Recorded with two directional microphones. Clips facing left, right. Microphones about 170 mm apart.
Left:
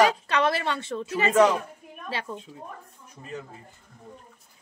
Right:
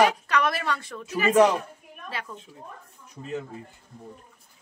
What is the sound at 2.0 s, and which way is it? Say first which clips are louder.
Speech: left 3 dB; 30° left (ahead or behind).